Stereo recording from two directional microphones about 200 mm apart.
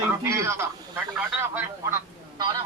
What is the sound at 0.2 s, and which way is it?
Speech, 15° right (ahead or behind).